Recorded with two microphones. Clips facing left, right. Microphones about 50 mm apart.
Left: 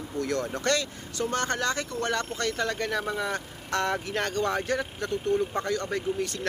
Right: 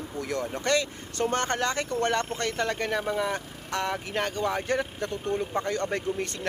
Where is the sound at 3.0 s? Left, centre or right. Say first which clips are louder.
Right 2 dB; centre.